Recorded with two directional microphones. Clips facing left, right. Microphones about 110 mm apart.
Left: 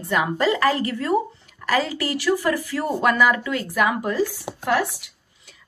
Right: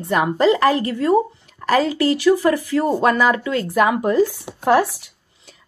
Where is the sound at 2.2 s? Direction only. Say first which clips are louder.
Right 4 dB; 20° right (ahead or behind).